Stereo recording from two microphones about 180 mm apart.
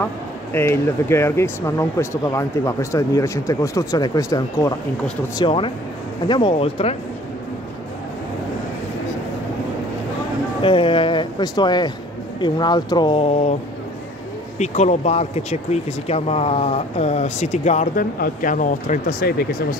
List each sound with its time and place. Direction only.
0.0 s speech: 15° left (ahead or behind)
5.4 s speech: 30° left (ahead or behind)
10.6 s speech: 30° left (ahead or behind)
14.6 s speech: 40° left (ahead or behind); by 19.8 s 55° left (ahead or behind)